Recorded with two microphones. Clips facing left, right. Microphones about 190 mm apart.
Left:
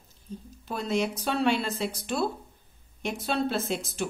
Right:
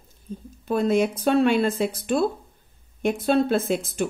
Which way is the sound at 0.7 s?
50° right (ahead or behind).